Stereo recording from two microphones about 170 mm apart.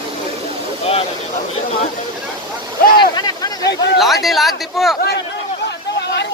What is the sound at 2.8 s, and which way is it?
Speech, 65° left (ahead or behind).